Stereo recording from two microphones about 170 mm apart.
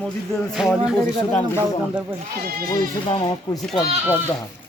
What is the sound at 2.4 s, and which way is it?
Speech, 65° right (ahead or behind).